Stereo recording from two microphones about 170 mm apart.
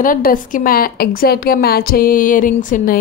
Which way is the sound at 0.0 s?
55° left (ahead or behind).